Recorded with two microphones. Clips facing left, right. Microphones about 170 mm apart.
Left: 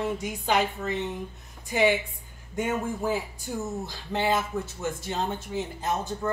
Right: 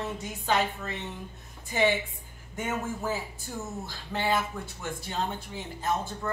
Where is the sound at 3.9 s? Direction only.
20° left (ahead or behind).